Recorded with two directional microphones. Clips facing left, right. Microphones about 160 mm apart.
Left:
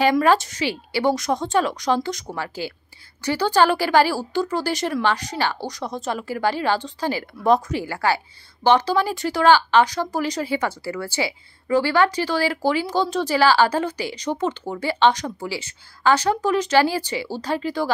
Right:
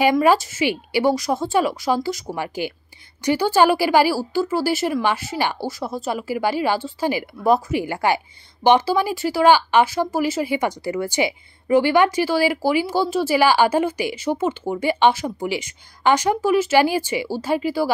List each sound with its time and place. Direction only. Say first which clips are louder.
0.0 s speech: right 1 dB; 10° right (ahead or behind)
1.1 s speech: right 1 dB; centre (ahead or behind)
2.3 s speech: right 3 dB; 15° right (ahead or behind)